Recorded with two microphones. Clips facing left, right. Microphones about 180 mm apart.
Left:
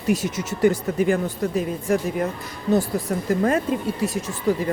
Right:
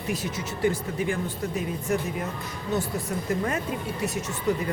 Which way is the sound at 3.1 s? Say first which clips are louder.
Left 8 dB; 50° left (ahead or behind).